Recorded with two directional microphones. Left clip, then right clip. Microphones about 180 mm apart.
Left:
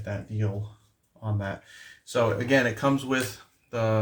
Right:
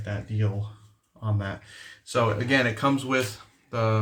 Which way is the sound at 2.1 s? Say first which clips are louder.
Even; 40° left (ahead or behind).